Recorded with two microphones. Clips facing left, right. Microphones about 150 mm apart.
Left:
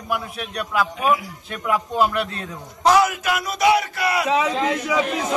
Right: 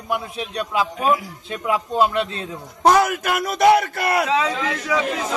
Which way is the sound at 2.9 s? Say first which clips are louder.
Right 1 dB; 55° right (ahead or behind).